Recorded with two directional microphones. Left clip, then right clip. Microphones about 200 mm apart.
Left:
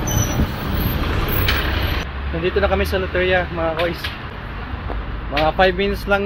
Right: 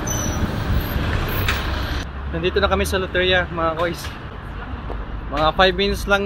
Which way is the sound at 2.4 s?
Centre (ahead or behind).